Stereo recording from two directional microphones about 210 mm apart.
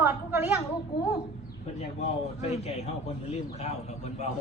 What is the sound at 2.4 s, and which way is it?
A man's voice, 30° left (ahead or behind).